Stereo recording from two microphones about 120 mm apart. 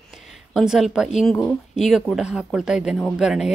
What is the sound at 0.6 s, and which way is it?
Speech, centre (ahead or behind).